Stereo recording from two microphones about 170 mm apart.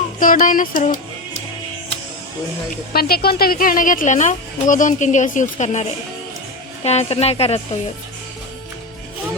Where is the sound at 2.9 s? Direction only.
65° left (ahead or behind); by 5.8 s 45° left (ahead or behind).